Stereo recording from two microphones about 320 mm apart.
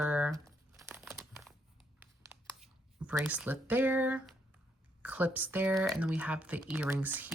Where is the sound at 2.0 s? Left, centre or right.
Centre.